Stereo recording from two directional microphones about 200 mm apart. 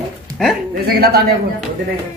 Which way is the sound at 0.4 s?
Centre (ahead or behind).